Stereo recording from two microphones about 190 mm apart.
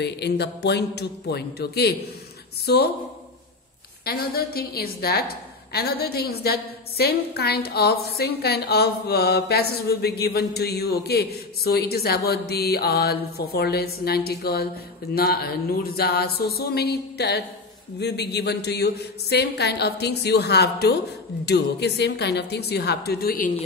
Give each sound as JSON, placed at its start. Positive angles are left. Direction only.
{"t": 0.0, "sound": "a woman's voice", "side_deg": 60}
{"t": 4.0, "sound": "a woman's voice", "side_deg": 55}